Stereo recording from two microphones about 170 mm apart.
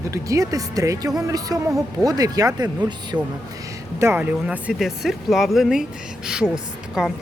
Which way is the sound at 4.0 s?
10° right (ahead or behind).